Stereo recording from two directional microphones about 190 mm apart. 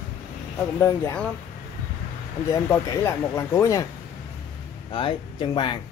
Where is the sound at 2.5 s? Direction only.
15° left (ahead or behind).